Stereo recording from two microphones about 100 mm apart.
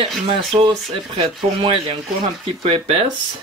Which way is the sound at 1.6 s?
70° right (ahead or behind).